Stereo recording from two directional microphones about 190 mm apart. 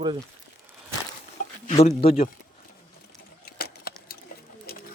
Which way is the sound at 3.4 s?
55° left (ahead or behind).